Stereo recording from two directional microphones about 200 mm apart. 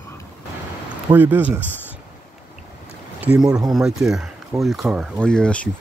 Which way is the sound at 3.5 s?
20° right (ahead or behind).